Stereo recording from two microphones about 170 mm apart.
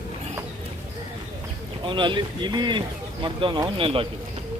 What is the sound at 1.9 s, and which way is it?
Speech, 30° right (ahead or behind).